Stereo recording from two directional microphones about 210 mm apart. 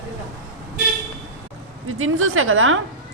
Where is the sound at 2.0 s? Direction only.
80° right.